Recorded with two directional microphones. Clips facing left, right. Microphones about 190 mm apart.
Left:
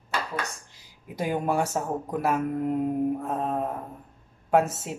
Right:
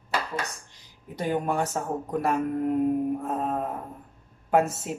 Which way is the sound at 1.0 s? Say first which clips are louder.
Even; 10° left (ahead or behind).